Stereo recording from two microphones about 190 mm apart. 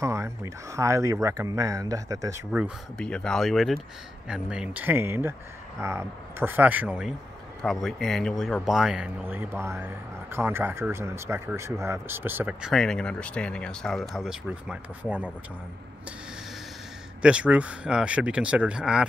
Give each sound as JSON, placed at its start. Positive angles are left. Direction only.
{"t": 0.0, "sound": "speech", "side_deg": -15}
{"t": 3.0, "sound": "speech", "side_deg": 5}
{"t": 12.7, "sound": "speech", "side_deg": 5}
{"t": 17.2, "sound": "speech", "side_deg": -5}